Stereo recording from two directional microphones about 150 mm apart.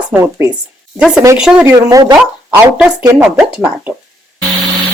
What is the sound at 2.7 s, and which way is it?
Speech, 5° right (ahead or behind).